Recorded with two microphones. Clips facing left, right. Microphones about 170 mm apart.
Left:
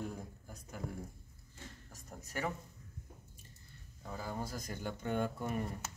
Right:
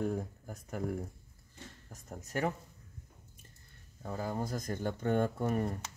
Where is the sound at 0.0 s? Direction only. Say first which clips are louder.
Right 9 dB; 55° right (ahead or behind).